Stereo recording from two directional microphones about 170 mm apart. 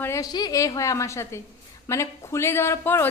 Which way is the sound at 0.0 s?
20° left (ahead or behind).